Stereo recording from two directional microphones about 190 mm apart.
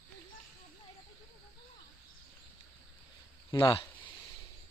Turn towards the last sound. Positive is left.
turn(degrees=25)  # may be behind; listen again after turning